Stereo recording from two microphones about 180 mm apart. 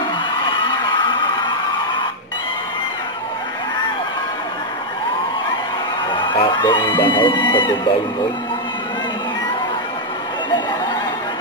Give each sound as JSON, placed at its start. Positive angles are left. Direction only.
{"t": 6.3, "sound": "music", "side_deg": 30}
{"t": 7.0, "sound": "speech", "side_deg": 25}